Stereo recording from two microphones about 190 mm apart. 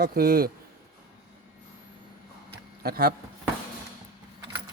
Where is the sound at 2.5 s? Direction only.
55° right (ahead or behind).